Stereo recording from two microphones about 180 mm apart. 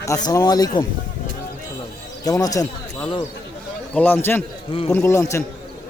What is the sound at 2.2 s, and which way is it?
Speech, 20° left (ahead or behind).